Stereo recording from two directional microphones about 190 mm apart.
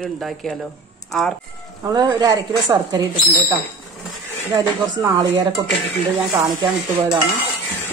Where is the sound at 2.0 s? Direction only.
20° right (ahead or behind).